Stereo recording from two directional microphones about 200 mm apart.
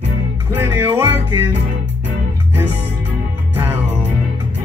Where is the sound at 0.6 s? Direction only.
10° right (ahead or behind).